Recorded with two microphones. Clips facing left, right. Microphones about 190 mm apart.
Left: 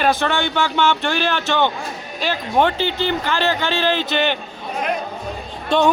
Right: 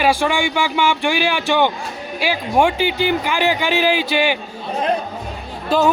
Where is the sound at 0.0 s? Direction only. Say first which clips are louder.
Right 2 dB; 10° right (ahead or behind).